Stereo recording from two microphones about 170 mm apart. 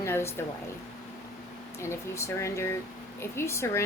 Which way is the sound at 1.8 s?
15° left (ahead or behind).